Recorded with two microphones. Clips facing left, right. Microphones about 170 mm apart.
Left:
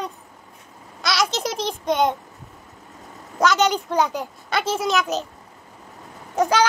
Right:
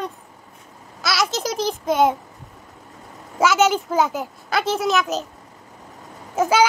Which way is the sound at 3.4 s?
5° right (ahead or behind).